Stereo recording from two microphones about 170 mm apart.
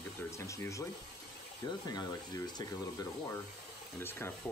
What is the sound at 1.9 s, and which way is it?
Speech, 25° left (ahead or behind).